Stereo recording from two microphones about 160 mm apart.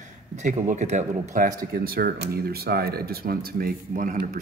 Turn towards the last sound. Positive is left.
turn(degrees=-55)  # may be behind; listen again after turning